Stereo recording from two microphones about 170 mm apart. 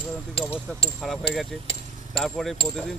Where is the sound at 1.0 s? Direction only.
Centre (ahead or behind).